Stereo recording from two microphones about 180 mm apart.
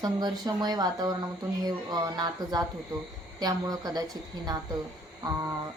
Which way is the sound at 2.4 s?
20° right (ahead or behind).